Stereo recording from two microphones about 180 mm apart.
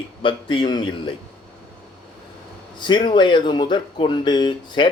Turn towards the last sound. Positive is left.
turn(degrees=25)  # may be behind; listen again after turning